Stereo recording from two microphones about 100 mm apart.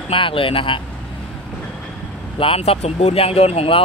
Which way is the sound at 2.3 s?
70° left (ahead or behind).